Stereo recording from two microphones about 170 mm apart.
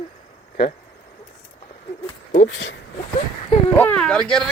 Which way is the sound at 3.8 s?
5° left (ahead or behind).